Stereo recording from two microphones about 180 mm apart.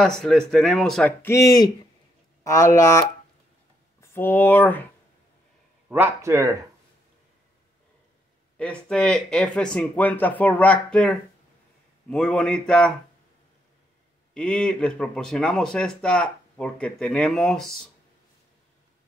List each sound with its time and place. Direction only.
0.0 s speech: 5° left (ahead or behind)
5.9 s speech: 15° right (ahead or behind)
8.5 s speech: 5° left (ahead or behind)
14.3 s speech: 5° left (ahead or behind)